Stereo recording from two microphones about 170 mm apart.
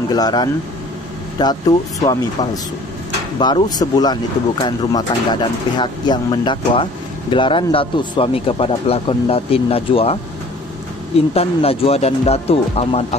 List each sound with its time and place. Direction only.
0.1 s speech: 25° left (ahead or behind)
11.1 s speech: 35° left (ahead or behind)